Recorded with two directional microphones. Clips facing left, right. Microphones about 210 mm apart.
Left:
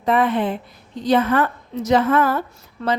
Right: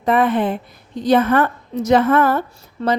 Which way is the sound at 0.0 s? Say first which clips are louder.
Right 2 dB; 50° right (ahead or behind).